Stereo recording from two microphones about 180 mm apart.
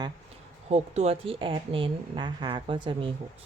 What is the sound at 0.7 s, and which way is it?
A woman's voice, 35° right (ahead or behind).